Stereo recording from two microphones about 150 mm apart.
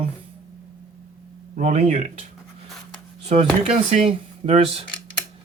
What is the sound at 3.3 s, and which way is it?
Speech, 45° right (ahead or behind).